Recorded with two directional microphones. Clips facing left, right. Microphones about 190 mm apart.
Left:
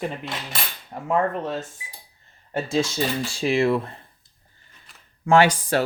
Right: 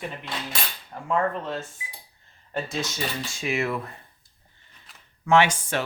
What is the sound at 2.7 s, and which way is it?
Speech, 30° left (ahead or behind).